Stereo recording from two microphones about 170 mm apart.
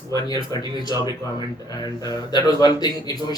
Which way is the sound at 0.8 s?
25° left (ahead or behind).